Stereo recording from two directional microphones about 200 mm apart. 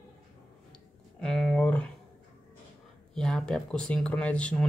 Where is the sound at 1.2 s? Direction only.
5° left (ahead or behind).